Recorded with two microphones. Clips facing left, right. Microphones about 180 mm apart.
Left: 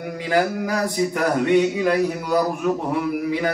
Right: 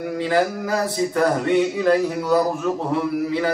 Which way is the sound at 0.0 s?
15° left (ahead or behind).